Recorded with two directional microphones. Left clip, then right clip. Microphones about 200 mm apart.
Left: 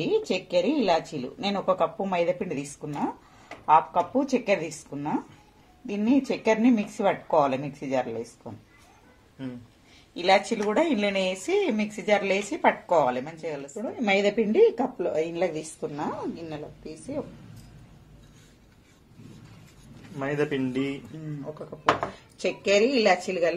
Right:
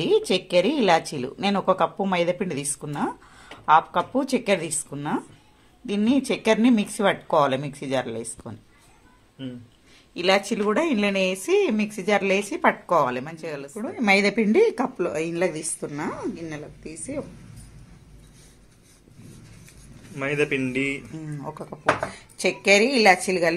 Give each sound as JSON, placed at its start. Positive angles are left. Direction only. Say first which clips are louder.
{"t": 0.3, "sound": "speech", "louder": "right 4 dB", "side_deg": -45}
{"t": 10.1, "sound": "speech", "louder": "right 1 dB", "side_deg": -40}
{"t": 20.2, "sound": "a man's voice", "louder": "right 3 dB", "side_deg": 10}
{"t": 22.4, "sound": "speech", "louder": "right 4 dB", "side_deg": -40}